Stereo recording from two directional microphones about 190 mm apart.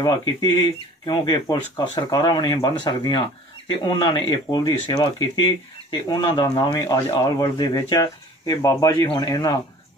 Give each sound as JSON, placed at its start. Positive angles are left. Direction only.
{"t": 0.0, "sound": "speech", "side_deg": 20}